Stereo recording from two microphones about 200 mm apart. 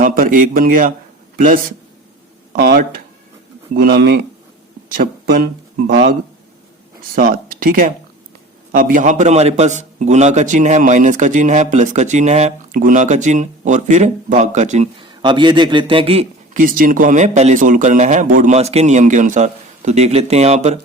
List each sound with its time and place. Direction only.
0.0 s speech: 45° right (ahead or behind)
3.8 s speech: 50° right (ahead or behind)
7.2 s a man's voice: 45° right (ahead or behind)
15.0 s a man's voice: 25° right (ahead or behind)
16.6 s a man's voice: 45° right (ahead or behind)